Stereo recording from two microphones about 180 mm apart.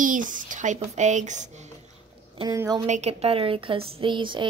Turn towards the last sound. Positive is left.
turn(degrees=-25)  # may be behind; listen again after turning